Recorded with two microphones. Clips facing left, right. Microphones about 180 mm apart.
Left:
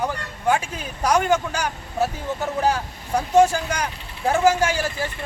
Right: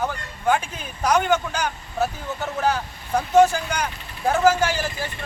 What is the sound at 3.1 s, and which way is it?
A man's voice, 10° left (ahead or behind).